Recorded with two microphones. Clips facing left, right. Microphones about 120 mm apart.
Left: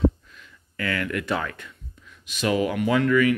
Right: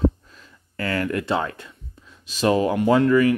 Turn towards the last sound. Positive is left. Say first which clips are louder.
# right 3 dB
turn(degrees=-35)  # may be behind; listen again after turning